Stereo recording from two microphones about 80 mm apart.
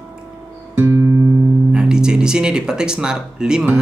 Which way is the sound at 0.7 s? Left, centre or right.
Right.